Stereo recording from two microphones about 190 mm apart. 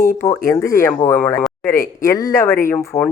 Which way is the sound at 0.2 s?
15° left (ahead or behind).